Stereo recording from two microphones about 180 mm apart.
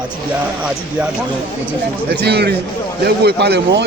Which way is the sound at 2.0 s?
65° right (ahead or behind).